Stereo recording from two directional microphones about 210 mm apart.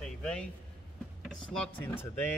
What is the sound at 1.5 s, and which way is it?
Speech, 5° left (ahead or behind).